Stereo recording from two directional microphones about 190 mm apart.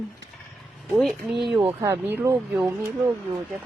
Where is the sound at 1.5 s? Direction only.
15° right (ahead or behind).